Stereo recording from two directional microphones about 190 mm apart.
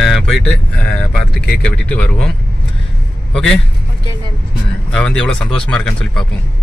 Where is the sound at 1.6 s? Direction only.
5° left (ahead or behind).